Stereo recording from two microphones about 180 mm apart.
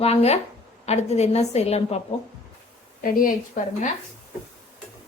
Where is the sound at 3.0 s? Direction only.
50° left (ahead or behind).